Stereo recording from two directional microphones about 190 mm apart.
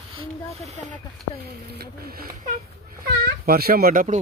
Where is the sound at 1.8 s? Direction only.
50° right (ahead or behind).